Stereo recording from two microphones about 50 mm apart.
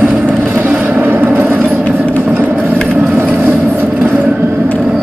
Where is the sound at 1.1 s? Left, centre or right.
Right.